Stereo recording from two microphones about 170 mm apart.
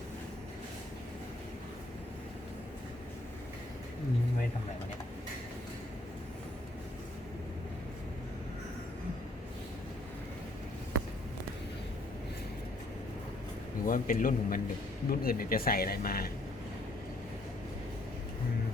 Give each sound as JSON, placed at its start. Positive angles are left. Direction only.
{"t": 13.8, "sound": "speech", "side_deg": 55}